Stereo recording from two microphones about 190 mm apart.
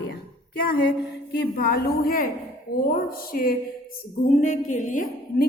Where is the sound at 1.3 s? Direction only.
55° left (ahead or behind).